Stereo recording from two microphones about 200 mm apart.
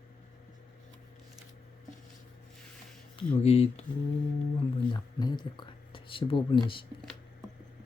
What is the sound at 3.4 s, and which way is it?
Speech, 30° left (ahead or behind).